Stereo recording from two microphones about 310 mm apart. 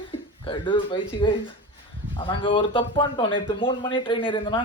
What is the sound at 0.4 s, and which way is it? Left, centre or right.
Speech, centre.